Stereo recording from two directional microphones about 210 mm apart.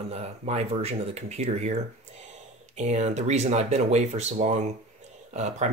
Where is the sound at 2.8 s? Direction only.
30° right (ahead or behind).